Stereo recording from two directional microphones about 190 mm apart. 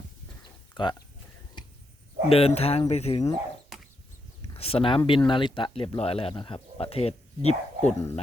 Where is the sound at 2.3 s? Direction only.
30° left (ahead or behind).